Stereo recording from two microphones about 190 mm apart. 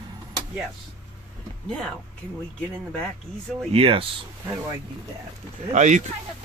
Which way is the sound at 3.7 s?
30° right (ahead or behind).